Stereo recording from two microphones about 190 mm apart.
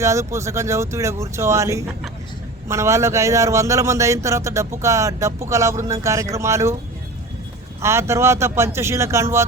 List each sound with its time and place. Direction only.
0.0 s a man's voice: 15° right (ahead or behind)
7.8 s a man's voice: 15° right (ahead or behind)